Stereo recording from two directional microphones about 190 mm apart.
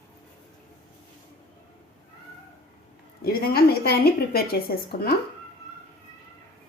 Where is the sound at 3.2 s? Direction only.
50° left (ahead or behind).